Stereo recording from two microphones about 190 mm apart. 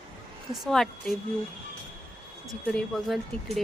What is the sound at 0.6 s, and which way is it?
Speech, 5° left (ahead or behind).